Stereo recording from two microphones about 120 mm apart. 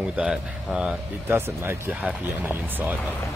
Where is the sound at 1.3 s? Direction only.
20° right (ahead or behind).